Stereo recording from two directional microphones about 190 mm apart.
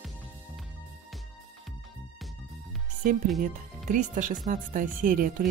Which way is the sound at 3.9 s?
45° right (ahead or behind).